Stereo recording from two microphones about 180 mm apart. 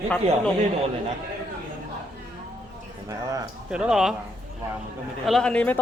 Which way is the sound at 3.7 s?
5° right (ahead or behind).